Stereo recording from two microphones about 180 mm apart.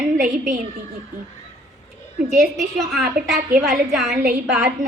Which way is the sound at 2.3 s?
Centre (ahead or behind).